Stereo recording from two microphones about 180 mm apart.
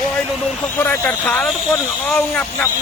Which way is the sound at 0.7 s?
15° left (ahead or behind).